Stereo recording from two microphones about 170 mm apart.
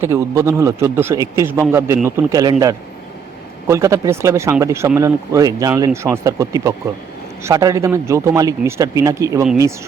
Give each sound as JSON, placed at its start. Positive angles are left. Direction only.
{"t": 0.0, "sound": "a man's voice", "side_deg": -15}